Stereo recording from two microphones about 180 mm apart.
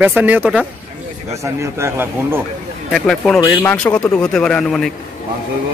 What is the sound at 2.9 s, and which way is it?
Speech, centre (ahead or behind).